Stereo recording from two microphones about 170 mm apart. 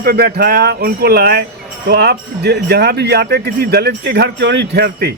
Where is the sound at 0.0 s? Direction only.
60° right (ahead or behind).